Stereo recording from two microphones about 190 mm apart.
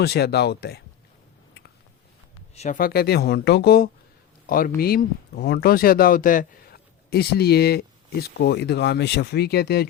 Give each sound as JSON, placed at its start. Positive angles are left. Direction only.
{"t": 0.0, "sound": "speech", "side_deg": 55}
{"t": 2.6, "sound": "speech", "side_deg": 45}